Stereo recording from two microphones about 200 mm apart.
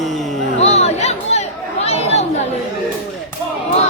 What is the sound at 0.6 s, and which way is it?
Chatter, 35° left (ahead or behind).